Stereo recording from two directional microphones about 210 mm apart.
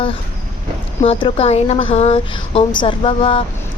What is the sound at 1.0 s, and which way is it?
A woman's voice, 30° left (ahead or behind).